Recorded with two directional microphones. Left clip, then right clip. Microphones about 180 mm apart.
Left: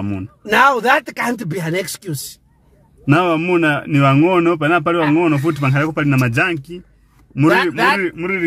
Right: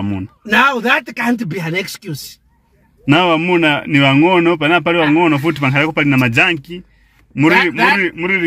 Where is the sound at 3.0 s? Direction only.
Centre (ahead or behind).